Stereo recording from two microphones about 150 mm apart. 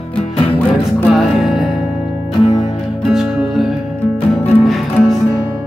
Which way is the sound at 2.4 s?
35° left (ahead or behind).